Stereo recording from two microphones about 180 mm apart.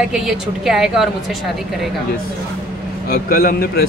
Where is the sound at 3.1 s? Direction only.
55° left (ahead or behind).